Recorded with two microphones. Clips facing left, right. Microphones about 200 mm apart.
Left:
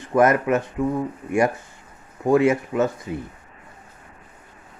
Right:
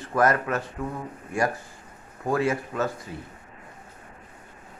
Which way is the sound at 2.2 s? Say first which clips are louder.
Left 7 dB; 20° left (ahead or behind).